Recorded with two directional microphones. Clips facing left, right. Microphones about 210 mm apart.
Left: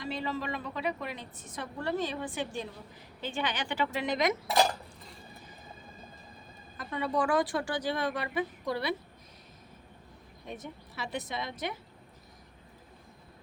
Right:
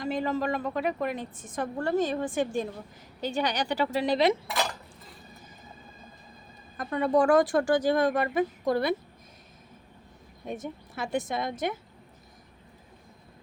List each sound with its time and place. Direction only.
0.0 s a woman's voice: 45° right (ahead or behind)
6.7 s a woman's voice: 45° right (ahead or behind)
10.4 s a woman's voice: 50° right (ahead or behind)